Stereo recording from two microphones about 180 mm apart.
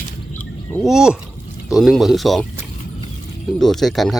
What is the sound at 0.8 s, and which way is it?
Speech, 5° right (ahead or behind).